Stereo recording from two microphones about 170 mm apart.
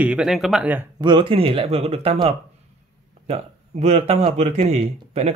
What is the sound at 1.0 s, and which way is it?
Speech, 30° right (ahead or behind).